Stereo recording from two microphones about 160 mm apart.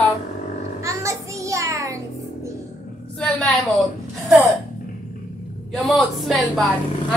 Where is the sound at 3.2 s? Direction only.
5° left (ahead or behind).